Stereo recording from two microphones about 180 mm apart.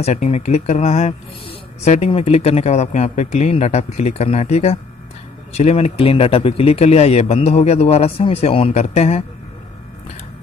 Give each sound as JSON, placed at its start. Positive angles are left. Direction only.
{"t": 0.0, "sound": "speech", "side_deg": 35}